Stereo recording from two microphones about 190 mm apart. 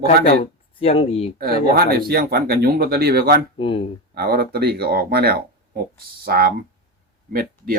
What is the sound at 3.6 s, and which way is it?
Speech, 30° left (ahead or behind).